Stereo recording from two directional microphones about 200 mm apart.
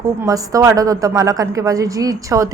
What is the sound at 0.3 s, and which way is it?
A woman's voice, 15° right (ahead or behind).